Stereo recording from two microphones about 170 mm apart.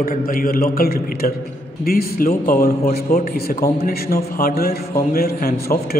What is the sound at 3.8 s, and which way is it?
A man's voice, 65° left (ahead or behind).